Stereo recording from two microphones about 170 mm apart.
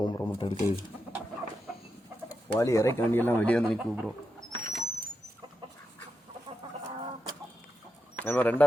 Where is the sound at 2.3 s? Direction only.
20° left (ahead or behind).